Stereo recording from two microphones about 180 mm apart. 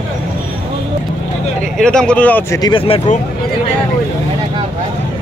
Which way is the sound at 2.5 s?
25° left (ahead or behind).